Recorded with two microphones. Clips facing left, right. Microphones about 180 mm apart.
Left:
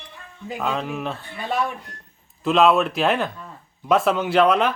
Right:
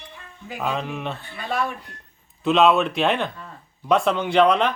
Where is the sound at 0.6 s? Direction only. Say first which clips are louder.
Left 1 dB; centre (ahead or behind).